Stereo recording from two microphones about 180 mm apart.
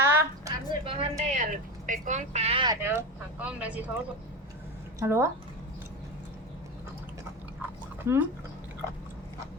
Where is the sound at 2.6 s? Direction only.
15° right (ahead or behind).